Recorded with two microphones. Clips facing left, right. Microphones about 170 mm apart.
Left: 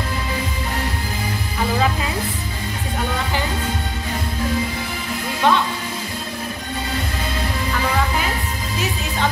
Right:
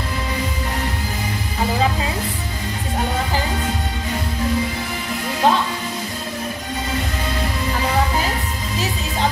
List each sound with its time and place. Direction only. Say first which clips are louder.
5.4 s music: even; 35° right (ahead or behind)